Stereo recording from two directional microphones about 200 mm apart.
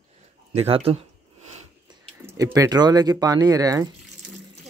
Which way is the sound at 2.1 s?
15° right (ahead or behind).